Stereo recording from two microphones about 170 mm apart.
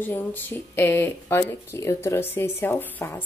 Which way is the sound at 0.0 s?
10° left (ahead or behind).